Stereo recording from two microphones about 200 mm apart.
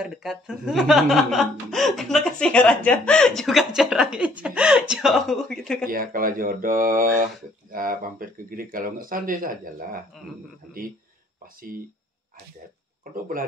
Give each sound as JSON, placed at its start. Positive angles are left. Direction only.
{"t": 0.0, "sound": "speech", "side_deg": 0}
{"t": 5.9, "sound": "speech", "side_deg": -45}
{"t": 10.7, "sound": "speech", "side_deg": -5}
{"t": 13.1, "sound": "speech", "side_deg": -45}